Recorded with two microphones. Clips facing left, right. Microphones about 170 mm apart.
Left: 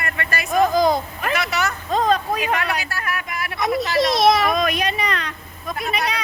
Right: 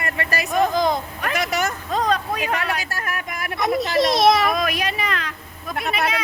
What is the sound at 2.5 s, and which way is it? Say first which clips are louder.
Speech: left 1 dB; 40° right (ahead or behind).